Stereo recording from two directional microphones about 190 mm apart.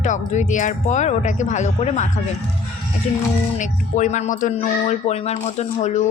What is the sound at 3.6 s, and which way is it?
Speech, 40° left (ahead or behind).